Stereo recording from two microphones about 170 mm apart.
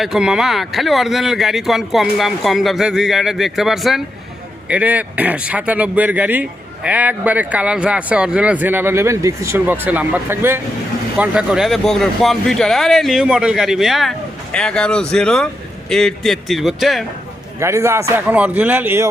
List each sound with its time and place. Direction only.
0.0 s speech: 5° right (ahead or behind)
17.6 s speech: 15° right (ahead or behind)